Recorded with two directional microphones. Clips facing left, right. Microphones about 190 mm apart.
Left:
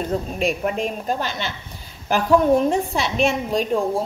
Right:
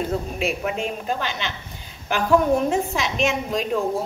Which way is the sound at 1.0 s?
35° left (ahead or behind).